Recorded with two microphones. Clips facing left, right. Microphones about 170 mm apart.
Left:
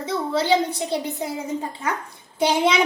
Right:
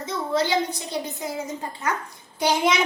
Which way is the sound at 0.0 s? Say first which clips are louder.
Left 1 dB; 30° left (ahead or behind).